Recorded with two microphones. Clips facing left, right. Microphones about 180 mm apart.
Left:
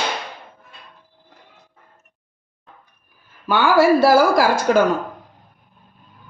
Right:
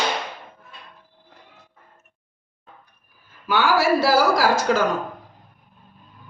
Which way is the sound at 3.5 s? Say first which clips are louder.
Left 4 dB; 55° left (ahead or behind).